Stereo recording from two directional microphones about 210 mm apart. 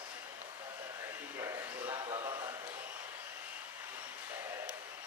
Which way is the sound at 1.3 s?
15° right (ahead or behind).